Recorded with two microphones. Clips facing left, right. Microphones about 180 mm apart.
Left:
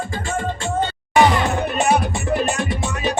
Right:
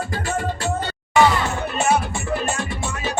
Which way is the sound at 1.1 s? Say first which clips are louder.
Left 2 dB; 15° left (ahead or behind).